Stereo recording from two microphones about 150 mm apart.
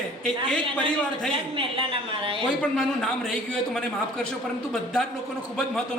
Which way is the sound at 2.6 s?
5° left (ahead or behind).